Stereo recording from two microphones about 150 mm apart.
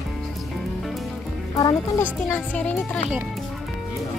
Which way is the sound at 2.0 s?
20° left (ahead or behind).